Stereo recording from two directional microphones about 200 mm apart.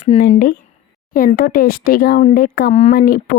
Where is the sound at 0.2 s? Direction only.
45° left (ahead or behind).